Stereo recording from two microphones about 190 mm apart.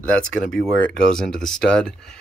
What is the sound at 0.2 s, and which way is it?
Speech, 5° left (ahead or behind).